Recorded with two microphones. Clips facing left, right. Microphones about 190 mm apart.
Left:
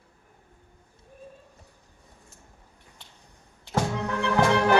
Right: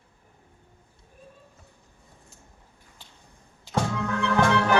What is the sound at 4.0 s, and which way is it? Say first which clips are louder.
Music: even; 20° left (ahead or behind).